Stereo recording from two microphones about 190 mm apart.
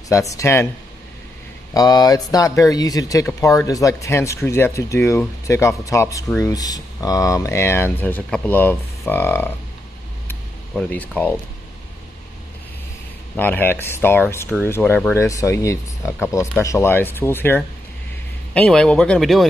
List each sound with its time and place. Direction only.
0.1 s speech: 15° left (ahead or behind)
1.7 s speech: 20° left (ahead or behind)
10.2 s a sound: 5° left (ahead or behind)
13.4 s speech: 10° left (ahead or behind)
15.1 s speech: 15° left (ahead or behind); by 19.4 s centre (ahead or behind)